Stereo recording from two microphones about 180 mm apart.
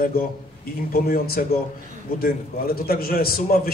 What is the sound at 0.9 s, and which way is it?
A man's voice, 55° left (ahead or behind).